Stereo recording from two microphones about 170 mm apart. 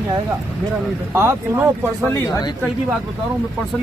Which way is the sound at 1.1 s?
15° right (ahead or behind).